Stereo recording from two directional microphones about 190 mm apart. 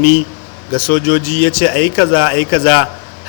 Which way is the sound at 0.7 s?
30° left (ahead or behind).